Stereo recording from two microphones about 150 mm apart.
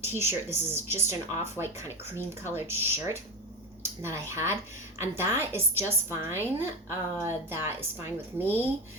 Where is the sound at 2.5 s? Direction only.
15° right (ahead or behind).